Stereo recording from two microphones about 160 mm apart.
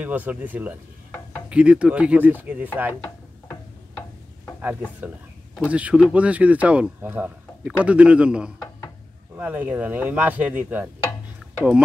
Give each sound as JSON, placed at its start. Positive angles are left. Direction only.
{"t": 0.0, "sound": "speech", "side_deg": -10}
{"t": 2.9, "sound": "a sound", "side_deg": 10}
{"t": 5.7, "sound": "speech", "side_deg": -10}